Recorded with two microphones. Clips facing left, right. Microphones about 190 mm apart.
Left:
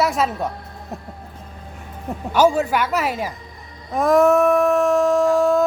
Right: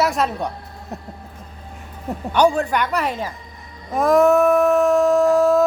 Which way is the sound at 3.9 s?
Centre (ahead or behind).